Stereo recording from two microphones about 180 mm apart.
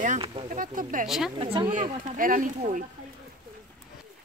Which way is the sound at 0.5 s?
50° right (ahead or behind).